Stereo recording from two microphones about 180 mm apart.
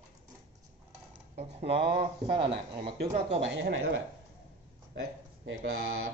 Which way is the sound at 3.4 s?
90° right.